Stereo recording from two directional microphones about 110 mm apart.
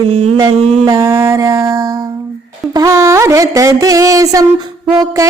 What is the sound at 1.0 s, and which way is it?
Music, 25° right (ahead or behind).